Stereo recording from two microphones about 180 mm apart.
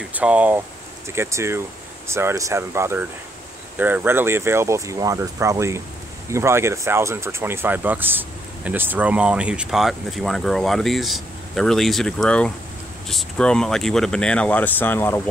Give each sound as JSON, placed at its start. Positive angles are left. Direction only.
{"t": 0.1, "sound": "speech", "side_deg": -10}